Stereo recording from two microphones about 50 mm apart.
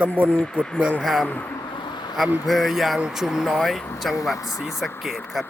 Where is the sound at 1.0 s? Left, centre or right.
Centre.